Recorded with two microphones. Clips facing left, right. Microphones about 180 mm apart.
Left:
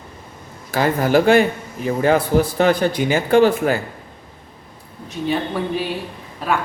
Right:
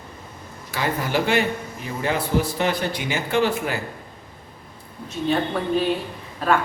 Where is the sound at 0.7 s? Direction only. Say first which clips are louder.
Left 8 dB; 45° left (ahead or behind).